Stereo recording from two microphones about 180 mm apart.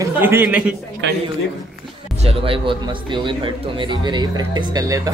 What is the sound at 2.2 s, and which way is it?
A man's voice, 30° right (ahead or behind).